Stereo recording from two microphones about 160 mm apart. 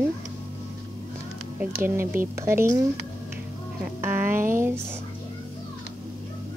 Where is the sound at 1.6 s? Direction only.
15° right (ahead or behind).